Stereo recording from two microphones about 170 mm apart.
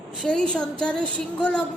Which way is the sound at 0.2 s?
5° left (ahead or behind).